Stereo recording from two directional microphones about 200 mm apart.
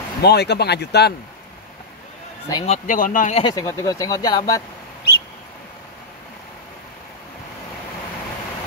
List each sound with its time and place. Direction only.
0.2 s speech: 55° left (ahead or behind)
2.5 s speech: 30° left (ahead or behind)
3.4 s speech: 15° left (ahead or behind)